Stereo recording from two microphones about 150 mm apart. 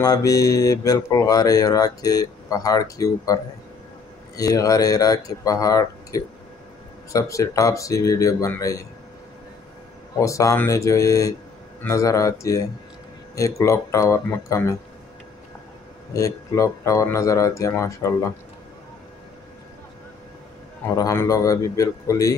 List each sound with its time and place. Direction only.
0.0 s speech: 25° left (ahead or behind)
4.4 s speech: 25° left (ahead or behind)
10.1 s speech: 20° left (ahead or behind)
16.1 s speech: 20° left (ahead or behind)
20.9 s speech: 20° left (ahead or behind)